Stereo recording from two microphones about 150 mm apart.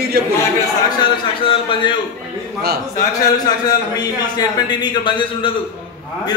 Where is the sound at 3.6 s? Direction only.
25° left (ahead or behind).